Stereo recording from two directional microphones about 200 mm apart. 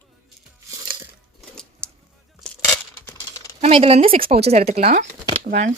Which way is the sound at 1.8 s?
5° left (ahead or behind).